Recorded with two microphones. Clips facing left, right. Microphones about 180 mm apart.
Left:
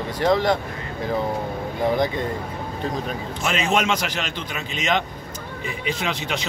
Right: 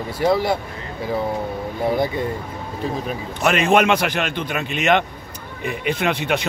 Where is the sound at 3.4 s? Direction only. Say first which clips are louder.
Right 6 dB; 60° right (ahead or behind).